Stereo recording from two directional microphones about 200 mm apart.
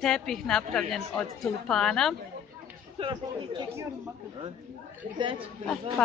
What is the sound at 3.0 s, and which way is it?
Speech, 30° right (ahead or behind).